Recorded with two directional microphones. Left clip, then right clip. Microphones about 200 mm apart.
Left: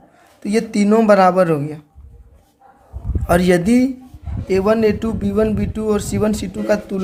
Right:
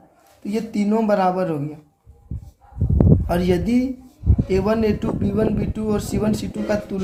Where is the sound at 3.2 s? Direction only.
40° left (ahead or behind).